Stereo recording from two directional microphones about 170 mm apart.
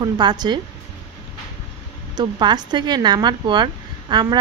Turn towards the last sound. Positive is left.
turn(degrees=-25)  # may be behind; listen again after turning